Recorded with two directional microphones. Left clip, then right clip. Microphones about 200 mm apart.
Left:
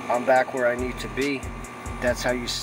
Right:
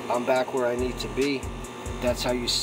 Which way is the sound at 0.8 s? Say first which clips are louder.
Right 1 dB; 15° right (ahead or behind).